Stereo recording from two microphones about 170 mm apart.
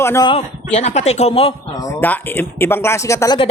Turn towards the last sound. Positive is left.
turn(degrees=20)  # may be behind; listen again after turning